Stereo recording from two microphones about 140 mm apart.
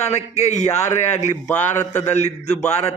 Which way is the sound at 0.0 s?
50° left (ahead or behind).